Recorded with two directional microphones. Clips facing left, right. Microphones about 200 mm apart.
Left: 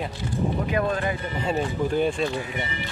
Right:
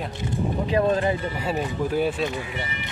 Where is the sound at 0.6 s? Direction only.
30° right (ahead or behind).